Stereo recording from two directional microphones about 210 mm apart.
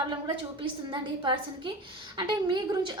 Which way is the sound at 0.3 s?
20° right (ahead or behind).